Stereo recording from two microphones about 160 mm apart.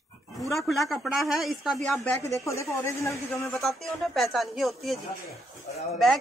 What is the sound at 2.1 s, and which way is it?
Speech, 15° left (ahead or behind).